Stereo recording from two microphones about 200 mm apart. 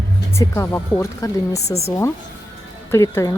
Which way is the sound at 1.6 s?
30° left (ahead or behind).